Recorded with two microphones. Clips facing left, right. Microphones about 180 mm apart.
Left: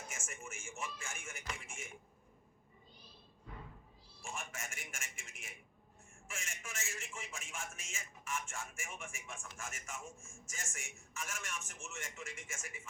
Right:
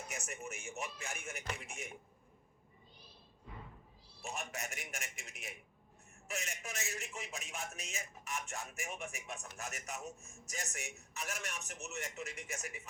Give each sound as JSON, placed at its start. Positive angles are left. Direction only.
{"t": 0.1, "sound": "a man's voice", "side_deg": -40}
{"t": 4.2, "sound": "a man's voice", "side_deg": -40}